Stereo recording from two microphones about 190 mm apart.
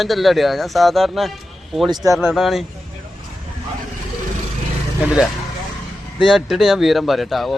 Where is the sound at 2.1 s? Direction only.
Centre (ahead or behind).